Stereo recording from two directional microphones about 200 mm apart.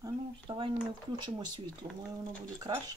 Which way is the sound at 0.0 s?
25° right (ahead or behind).